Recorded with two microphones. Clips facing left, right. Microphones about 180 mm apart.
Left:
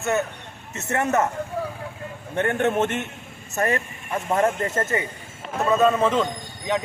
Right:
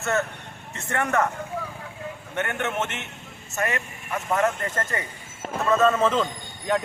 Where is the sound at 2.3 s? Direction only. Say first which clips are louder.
Left 7 dB; 35° left (ahead or behind).